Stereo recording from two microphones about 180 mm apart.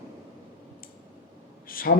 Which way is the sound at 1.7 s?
55° left (ahead or behind).